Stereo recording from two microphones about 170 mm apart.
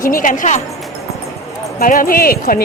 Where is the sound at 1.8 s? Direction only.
55° left (ahead or behind).